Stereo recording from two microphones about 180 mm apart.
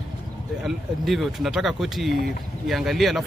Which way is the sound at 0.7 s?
Centre (ahead or behind).